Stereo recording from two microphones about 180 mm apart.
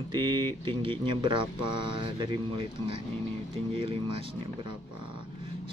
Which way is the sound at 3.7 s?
30° right (ahead or behind).